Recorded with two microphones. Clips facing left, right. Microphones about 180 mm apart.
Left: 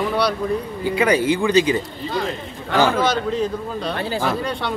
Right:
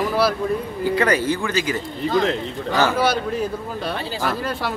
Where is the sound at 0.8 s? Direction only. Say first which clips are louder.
Left 2 dB; 10° left (ahead or behind).